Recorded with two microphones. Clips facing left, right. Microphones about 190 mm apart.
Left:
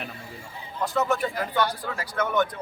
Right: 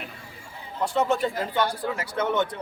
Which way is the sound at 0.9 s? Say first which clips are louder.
Right 1 dB; 30° right (ahead or behind).